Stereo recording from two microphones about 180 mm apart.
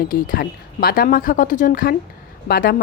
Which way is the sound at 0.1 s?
55° left (ahead or behind).